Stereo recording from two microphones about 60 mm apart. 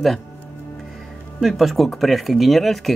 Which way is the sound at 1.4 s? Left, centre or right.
Centre.